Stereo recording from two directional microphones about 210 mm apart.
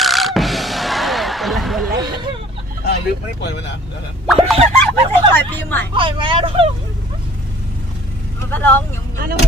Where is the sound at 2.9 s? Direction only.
55° left (ahead or behind).